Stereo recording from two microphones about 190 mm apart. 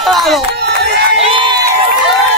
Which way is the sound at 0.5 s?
60° right (ahead or behind).